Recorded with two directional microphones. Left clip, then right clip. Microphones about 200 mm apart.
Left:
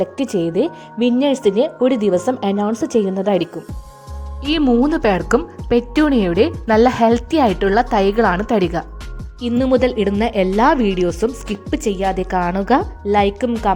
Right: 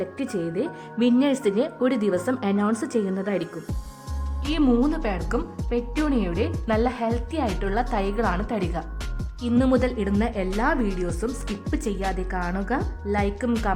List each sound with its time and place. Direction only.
0.0 s speech: 25° left (ahead or behind)
4.4 s speech: centre (ahead or behind)
4.8 s speech: 30° left (ahead or behind)
11.3 s speech: centre (ahead or behind)
11.7 s speech: 20° left (ahead or behind)